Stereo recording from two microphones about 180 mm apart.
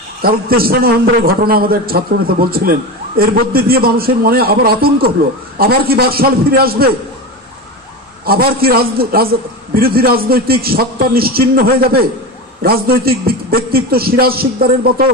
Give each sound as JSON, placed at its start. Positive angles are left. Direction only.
{"t": 0.2, "sound": "a man's voice", "side_deg": -55}
{"t": 8.3, "sound": "a man's voice", "side_deg": -55}